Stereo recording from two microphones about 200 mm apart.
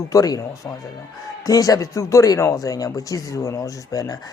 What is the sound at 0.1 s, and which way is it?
Speech, 15° left (ahead or behind).